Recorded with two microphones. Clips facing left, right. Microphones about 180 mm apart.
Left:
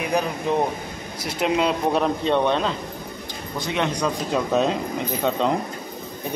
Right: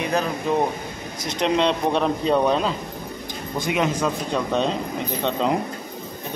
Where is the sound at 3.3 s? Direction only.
50° right (ahead or behind).